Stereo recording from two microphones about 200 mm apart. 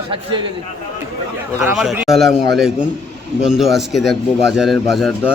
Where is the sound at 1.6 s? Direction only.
Centre (ahead or behind).